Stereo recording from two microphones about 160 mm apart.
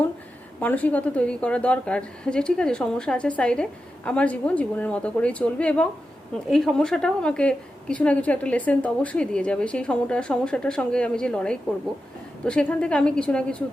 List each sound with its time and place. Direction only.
0.6 s a woman's voice: 10° left (ahead or behind)